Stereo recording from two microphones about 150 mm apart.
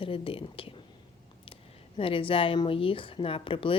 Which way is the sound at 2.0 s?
35° left (ahead or behind).